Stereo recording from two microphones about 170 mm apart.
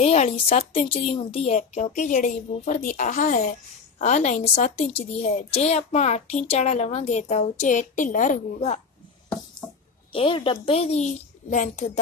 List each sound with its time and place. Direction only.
0.0 s a woman's voice: 35° left (ahead or behind)
10.1 s a woman's voice: 30° left (ahead or behind); by 12.0 s 45° left (ahead or behind)